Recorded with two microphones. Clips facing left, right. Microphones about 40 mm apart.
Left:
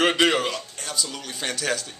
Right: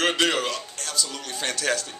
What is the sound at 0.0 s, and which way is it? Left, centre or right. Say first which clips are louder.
A man's voice: left 3 dB; centre.